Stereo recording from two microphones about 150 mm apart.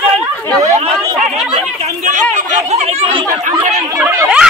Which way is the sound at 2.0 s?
55° right (ahead or behind).